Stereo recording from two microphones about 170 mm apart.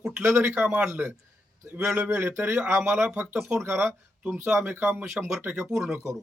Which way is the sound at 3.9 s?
Centre (ahead or behind).